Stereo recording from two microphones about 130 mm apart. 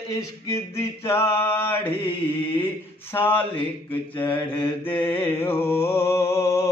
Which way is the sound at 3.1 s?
15° left (ahead or behind).